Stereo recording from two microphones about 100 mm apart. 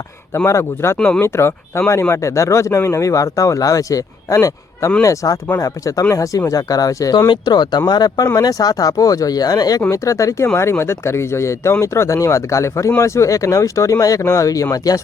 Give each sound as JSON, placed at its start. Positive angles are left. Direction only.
{"t": 0.3, "sound": "speech", "side_deg": 25}
{"t": 0.9, "sound": "speech", "side_deg": 10}
{"t": 1.2, "sound": "speech", "side_deg": 25}